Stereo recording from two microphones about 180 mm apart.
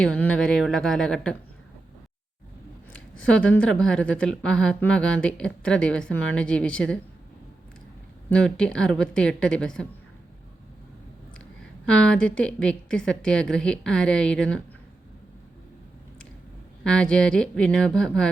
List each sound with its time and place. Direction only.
0.0 s a woman's voice: 5° left (ahead or behind)
2.9 s a woman's voice: 5° left (ahead or behind)
8.3 s a woman's voice: 5° left (ahead or behind)
11.3 s a woman's voice: 5° left (ahead or behind)
16.8 s a woman's voice: 5° left (ahead or behind)